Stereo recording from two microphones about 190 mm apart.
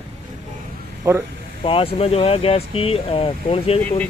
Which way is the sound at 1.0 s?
15° right (ahead or behind).